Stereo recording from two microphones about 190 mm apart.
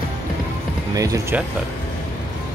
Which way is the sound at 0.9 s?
15° right (ahead or behind).